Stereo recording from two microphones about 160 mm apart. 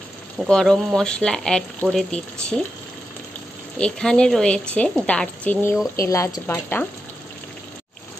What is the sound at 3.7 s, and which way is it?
Speech, 5° left (ahead or behind).